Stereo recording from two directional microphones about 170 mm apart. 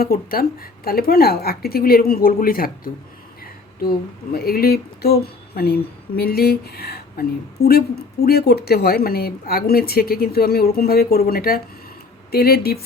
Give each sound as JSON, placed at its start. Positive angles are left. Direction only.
{"t": 0.0, "sound": "speech", "side_deg": 60}